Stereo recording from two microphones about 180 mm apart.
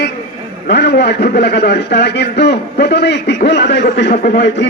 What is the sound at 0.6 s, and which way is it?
A man's voice, 70° left (ahead or behind).